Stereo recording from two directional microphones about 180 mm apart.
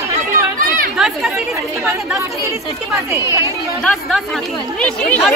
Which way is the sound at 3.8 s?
Centre (ahead or behind).